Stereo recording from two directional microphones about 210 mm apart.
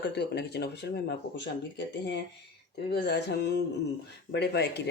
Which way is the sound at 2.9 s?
50° left (ahead or behind).